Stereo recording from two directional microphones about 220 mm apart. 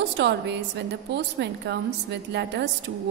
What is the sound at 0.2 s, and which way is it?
A woman's voice, 55° right (ahead or behind).